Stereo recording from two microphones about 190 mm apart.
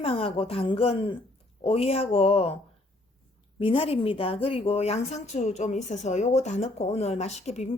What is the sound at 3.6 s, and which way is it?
A woman's voice, 30° left (ahead or behind).